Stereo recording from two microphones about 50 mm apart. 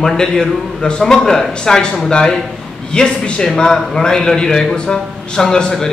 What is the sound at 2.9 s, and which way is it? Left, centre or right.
A man's voice, centre.